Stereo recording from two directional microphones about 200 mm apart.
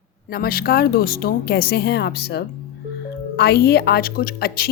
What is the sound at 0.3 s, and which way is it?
A woman's voice, 50° left (ahead or behind).